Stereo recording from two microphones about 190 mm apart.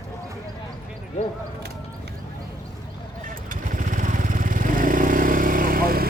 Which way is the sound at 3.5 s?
45° right (ahead or behind).